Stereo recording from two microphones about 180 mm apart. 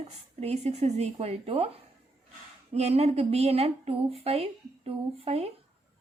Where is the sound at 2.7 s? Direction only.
35° right (ahead or behind).